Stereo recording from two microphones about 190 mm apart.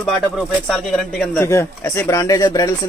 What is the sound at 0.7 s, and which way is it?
Speech, 5° left (ahead or behind).